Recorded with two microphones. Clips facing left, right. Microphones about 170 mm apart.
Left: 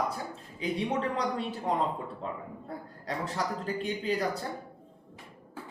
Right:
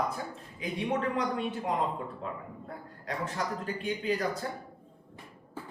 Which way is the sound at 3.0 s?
30° left (ahead or behind).